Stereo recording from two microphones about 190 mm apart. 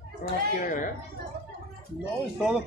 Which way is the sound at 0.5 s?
45° left (ahead or behind).